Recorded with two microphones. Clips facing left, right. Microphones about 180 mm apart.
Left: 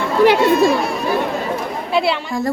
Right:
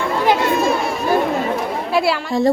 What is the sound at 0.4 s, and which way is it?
A woman's voice, centre (ahead or behind).